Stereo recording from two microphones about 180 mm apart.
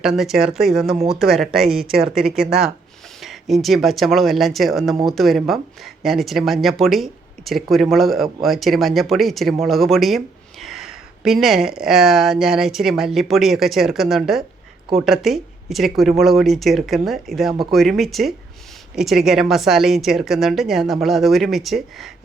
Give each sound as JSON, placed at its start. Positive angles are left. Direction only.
{"t": 0.0, "sound": "speech", "side_deg": 0}
{"t": 0.9, "sound": "speech", "side_deg": -35}
{"t": 1.2, "sound": "speech", "side_deg": 0}